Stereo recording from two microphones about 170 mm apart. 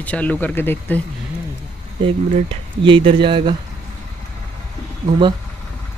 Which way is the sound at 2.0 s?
30° right (ahead or behind).